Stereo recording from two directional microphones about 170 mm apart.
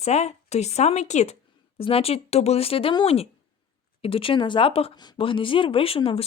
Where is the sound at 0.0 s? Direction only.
40° left (ahead or behind).